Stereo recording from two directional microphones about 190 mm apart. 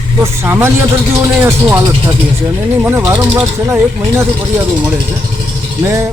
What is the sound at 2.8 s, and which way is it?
Speech, 15° right (ahead or behind).